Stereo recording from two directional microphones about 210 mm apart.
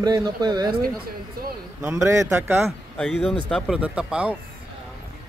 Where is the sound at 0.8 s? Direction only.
45° right (ahead or behind).